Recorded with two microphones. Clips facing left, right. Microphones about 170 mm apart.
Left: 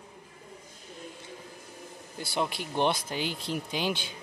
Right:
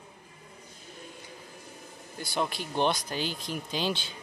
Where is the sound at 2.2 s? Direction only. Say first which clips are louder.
Even; 25° left (ahead or behind).